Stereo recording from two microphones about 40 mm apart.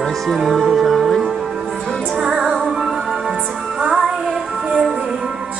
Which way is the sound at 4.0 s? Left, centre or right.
Right.